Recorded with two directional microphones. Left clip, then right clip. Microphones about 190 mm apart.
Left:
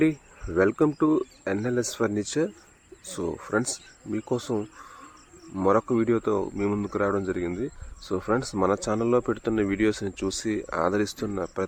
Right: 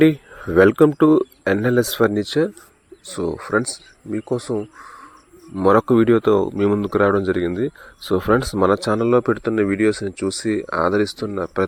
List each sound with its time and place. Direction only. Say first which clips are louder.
0.0 s speech: right 9 dB; 40° right (ahead or behind); by 4.9 s 20° right (ahead or behind)
5.6 s speech: right 8 dB; 35° right (ahead or behind)